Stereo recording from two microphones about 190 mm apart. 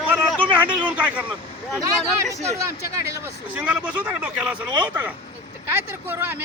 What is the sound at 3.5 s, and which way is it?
Speech, 5° right (ahead or behind).